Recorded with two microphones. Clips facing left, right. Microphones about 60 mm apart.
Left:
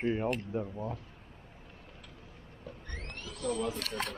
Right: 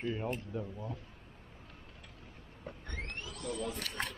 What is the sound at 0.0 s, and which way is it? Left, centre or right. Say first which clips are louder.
Speech: left 5 dB; left.